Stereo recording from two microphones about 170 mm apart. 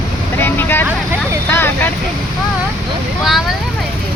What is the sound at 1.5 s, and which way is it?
Speech, 10° left (ahead or behind).